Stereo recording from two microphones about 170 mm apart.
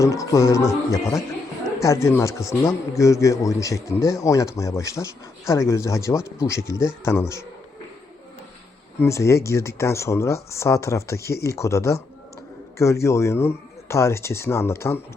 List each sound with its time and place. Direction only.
0.0 s a man's voice: 20° left (ahead or behind)
9.0 s a man's voice: 15° left (ahead or behind)